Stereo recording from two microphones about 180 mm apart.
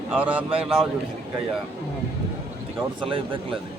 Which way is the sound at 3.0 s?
30° right (ahead or behind).